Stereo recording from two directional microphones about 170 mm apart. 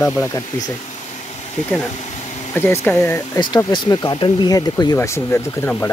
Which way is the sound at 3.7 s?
25° left (ahead or behind).